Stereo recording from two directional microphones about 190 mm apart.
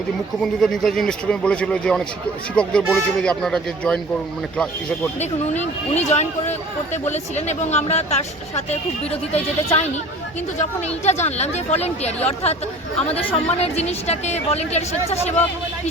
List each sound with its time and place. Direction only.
0.4 s a man's voice: centre (ahead or behind)
5.2 s speech: 35° left (ahead or behind)